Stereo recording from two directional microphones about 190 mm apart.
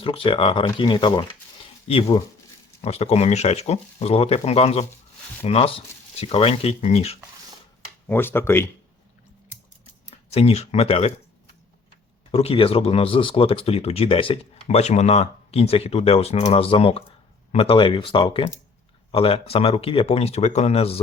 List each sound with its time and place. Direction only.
0.0 s speech: 30° left (ahead or behind)
8.0 s speech: 10° left (ahead or behind)
10.3 s speech: 35° left (ahead or behind)
12.3 s speech: 30° left (ahead or behind)